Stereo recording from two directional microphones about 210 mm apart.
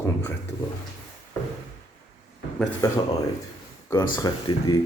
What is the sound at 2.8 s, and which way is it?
Speech, 15° left (ahead or behind).